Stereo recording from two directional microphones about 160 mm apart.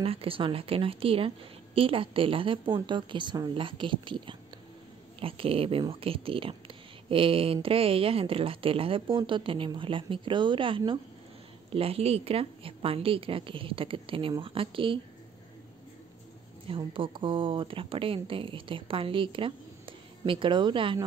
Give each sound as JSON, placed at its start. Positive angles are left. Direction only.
{"t": 0.0, "sound": "speech", "side_deg": -35}
{"t": 16.6, "sound": "speech", "side_deg": -35}